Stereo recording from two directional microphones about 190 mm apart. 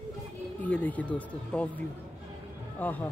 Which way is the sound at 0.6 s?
10° left (ahead or behind).